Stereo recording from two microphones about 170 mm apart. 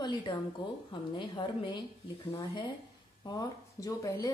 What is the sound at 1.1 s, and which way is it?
Speech, 30° left (ahead or behind).